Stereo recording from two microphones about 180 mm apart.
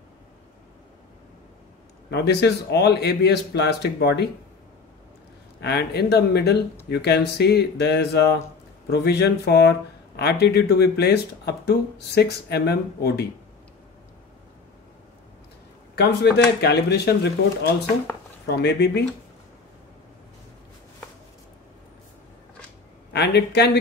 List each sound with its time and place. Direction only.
2.0 s speech: 65° left (ahead or behind)
5.6 s speech: 65° left (ahead or behind)
15.9 s speech: 65° left (ahead or behind)
23.1 s speech: 65° left (ahead or behind)